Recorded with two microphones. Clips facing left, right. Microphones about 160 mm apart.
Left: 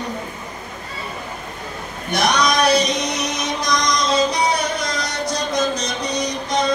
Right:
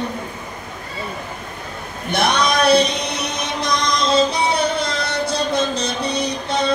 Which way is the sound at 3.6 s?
30° right (ahead or behind).